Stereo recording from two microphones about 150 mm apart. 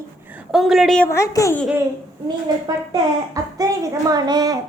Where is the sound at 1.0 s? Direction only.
20° left (ahead or behind).